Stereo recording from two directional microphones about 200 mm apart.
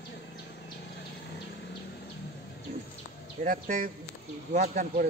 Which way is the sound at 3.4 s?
45° right (ahead or behind).